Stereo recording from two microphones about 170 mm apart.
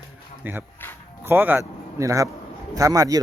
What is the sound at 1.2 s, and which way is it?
A man's voice, 10° right (ahead or behind).